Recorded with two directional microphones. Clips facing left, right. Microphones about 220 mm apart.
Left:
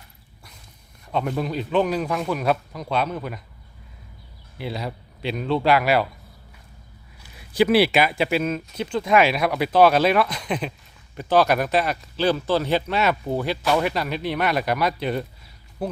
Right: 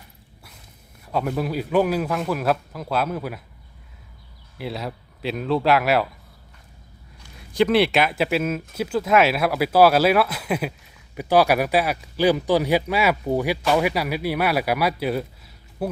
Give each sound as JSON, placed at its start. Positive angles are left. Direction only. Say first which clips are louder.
{"t": 1.0, "sound": "a man's voice", "louder": "right 1 dB", "side_deg": -5}
{"t": 4.5, "sound": "a man's voice", "louder": "even", "side_deg": 0}
{"t": 7.2, "sound": "a sound", "louder": "even", "side_deg": 5}
{"t": 8.2, "sound": "a man's voice", "louder": "even", "side_deg": 0}